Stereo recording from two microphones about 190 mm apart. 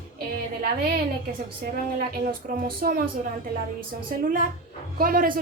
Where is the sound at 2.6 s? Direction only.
50° right (ahead or behind).